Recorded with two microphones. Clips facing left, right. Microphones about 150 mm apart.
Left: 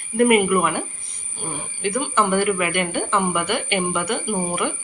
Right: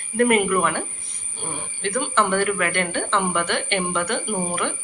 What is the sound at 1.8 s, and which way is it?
Speech, 5° left (ahead or behind).